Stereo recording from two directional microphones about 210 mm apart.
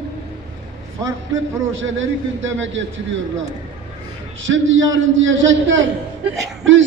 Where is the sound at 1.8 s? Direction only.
65° right (ahead or behind).